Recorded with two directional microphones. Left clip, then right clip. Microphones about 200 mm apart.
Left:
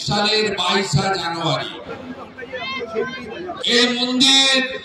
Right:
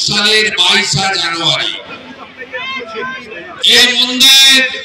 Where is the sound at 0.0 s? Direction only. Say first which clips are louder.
Right 8 dB; 55° left (ahead or behind).